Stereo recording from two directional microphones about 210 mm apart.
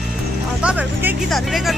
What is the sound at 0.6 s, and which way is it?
Speech, 5° right (ahead or behind).